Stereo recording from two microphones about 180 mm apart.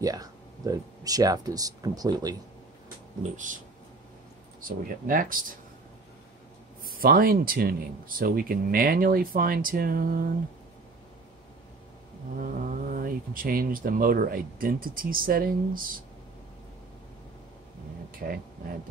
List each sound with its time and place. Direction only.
0.0 s speech: 20° right (ahead or behind)
4.6 s speech: 50° right (ahead or behind)
6.8 s speech: 55° right (ahead or behind)
12.4 s speech: 50° right (ahead or behind)
18.2 s speech: 55° right (ahead or behind)